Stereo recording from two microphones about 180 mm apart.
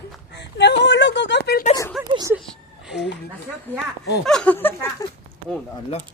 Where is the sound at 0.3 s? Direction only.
75° left (ahead or behind).